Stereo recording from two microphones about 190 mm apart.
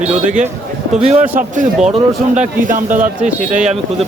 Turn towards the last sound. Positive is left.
turn(degrees=-40)  # may be behind; listen again after turning